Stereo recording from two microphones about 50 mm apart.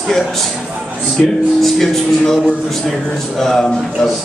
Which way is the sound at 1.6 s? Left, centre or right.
Centre.